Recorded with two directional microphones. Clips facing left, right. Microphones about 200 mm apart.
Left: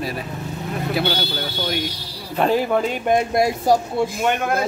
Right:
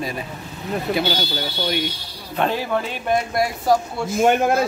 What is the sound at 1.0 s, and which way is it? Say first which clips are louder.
Speech: even; 60° left (ahead or behind).